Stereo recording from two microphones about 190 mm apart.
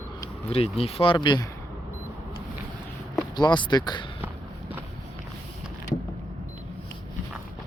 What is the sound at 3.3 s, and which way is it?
Speech, 25° left (ahead or behind).